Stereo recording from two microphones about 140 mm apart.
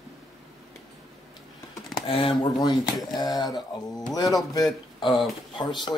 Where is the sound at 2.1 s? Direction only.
40° left (ahead or behind).